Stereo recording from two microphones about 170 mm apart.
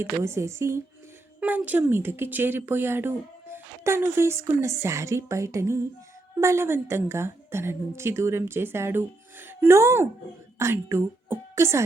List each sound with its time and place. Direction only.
0.0 s a woman's voice: 15° right (ahead or behind)